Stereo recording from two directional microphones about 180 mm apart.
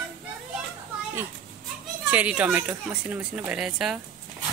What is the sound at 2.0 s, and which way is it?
Speech, 10° right (ahead or behind).